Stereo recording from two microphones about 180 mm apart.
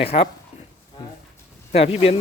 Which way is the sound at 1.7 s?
35° left (ahead or behind).